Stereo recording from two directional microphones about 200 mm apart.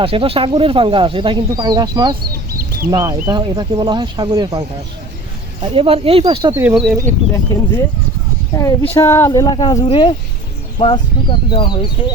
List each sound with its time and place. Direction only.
0.0 s speech: 30° right (ahead or behind)
5.6 s speech: 25° right (ahead or behind)
6.5 s speech: 10° right (ahead or behind)
7.0 s speech: 15° left (ahead or behind)